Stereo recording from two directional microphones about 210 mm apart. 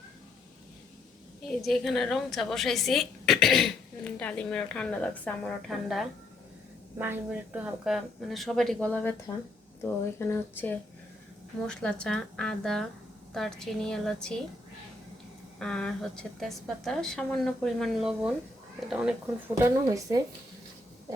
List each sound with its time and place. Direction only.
1.5 s speech: centre (ahead or behind)
15.5 s speech: 5° left (ahead or behind)
19.5 s speech: 15° right (ahead or behind)